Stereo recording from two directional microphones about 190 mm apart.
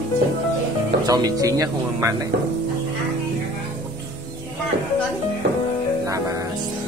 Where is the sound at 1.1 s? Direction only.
20° right (ahead or behind).